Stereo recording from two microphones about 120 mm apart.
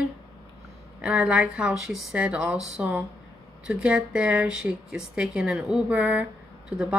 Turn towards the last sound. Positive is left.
turn(degrees=-10)  # may be behind; listen again after turning